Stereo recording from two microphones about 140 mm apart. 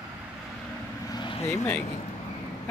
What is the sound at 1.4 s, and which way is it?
Speech, 20° left (ahead or behind).